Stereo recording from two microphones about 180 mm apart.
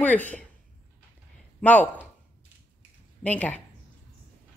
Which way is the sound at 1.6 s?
10° left (ahead or behind).